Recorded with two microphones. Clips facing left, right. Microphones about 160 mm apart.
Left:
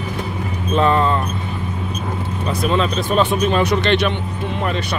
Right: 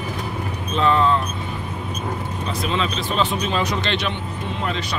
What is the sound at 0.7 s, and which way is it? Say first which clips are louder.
Speech: left 3 dB; 55° left (ahead or behind).